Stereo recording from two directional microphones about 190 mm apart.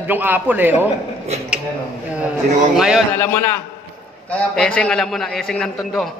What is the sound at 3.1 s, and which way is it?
A man's voice, 10° left (ahead or behind).